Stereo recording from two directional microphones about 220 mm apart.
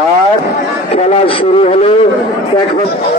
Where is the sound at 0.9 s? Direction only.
25° left (ahead or behind).